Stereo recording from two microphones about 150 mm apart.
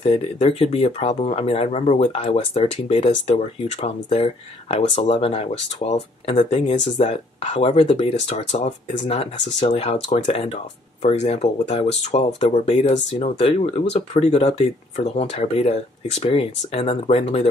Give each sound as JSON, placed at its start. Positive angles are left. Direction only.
{"t": 0.0, "sound": "speech", "side_deg": 40}